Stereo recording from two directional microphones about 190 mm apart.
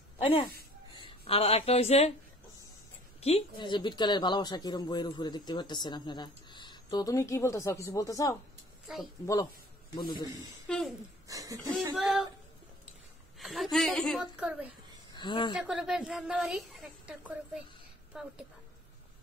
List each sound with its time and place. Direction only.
0.2 s speech: 25° left (ahead or behind)
3.2 s speech: 30° left (ahead or behind)
8.8 s speech: centre (ahead or behind)
9.2 s speech: 20° left (ahead or behind)
10.7 s a woman's voice: 5° left (ahead or behind)
11.2 s speech: 15° right (ahead or behind)
13.4 s a woman's voice: centre (ahead or behind)
15.1 s speech: 25° left (ahead or behind)
15.5 s a woman's voice: 5° right (ahead or behind)